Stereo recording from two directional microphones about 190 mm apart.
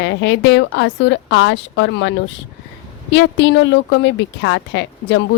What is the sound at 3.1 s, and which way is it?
Speech, 65° left (ahead or behind).